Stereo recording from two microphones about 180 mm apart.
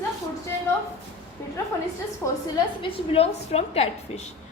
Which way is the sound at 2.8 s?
35° left (ahead or behind).